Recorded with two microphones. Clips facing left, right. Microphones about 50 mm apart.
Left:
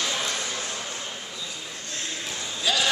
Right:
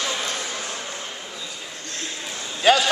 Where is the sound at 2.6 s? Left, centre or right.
Right.